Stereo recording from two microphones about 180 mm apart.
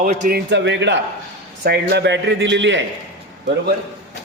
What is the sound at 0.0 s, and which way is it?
Speech, 45° right (ahead or behind).